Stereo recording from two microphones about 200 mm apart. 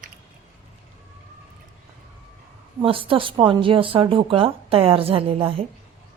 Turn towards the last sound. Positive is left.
turn(degrees=-30)  # may be behind; listen again after turning